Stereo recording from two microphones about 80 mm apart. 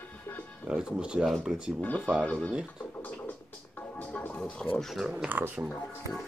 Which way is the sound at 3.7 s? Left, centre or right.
Left.